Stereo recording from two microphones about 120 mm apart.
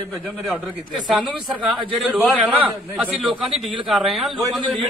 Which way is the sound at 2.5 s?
15° right (ahead or behind).